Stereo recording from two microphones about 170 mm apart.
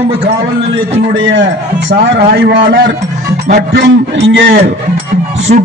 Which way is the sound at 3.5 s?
80° right.